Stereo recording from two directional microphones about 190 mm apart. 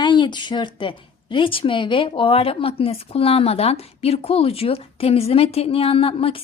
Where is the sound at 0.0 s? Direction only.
25° left (ahead or behind).